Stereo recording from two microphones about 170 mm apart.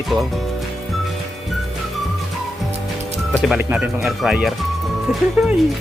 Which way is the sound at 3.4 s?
5° right (ahead or behind).